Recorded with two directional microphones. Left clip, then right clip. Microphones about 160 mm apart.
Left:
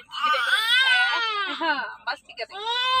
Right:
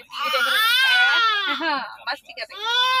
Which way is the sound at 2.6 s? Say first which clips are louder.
Right 4 dB; 15° left (ahead or behind).